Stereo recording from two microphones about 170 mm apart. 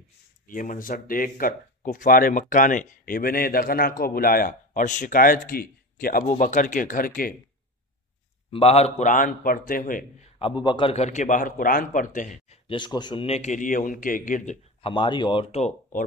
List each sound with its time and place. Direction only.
0.5 s speech: 55° left (ahead or behind)
8.5 s a man's voice: 35° left (ahead or behind); by 10.0 s 55° left (ahead or behind)
10.4 s a man's voice: 25° left (ahead or behind); by 12.5 s 45° left (ahead or behind)
12.6 s a man's voice: 25° left (ahead or behind); by 14.9 s 45° left (ahead or behind)
14.9 s speech: 30° left (ahead or behind)